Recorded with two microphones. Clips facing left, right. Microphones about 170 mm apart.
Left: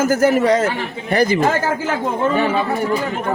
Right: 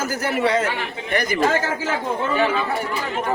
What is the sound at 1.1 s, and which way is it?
Speech, 30° left (ahead or behind).